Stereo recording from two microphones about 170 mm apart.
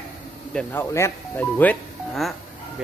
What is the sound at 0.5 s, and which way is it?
A man's voice, 5° left (ahead or behind).